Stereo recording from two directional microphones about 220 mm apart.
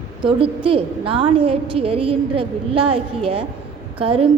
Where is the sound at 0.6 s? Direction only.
25° right (ahead or behind).